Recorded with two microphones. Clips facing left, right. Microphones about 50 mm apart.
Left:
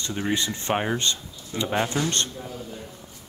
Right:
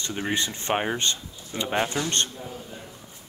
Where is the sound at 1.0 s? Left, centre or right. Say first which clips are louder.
Even; right.